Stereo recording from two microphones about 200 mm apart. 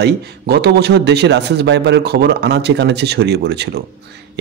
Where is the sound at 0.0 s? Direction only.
55° right (ahead or behind).